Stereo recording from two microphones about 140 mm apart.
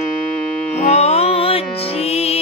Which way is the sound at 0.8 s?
50° left (ahead or behind).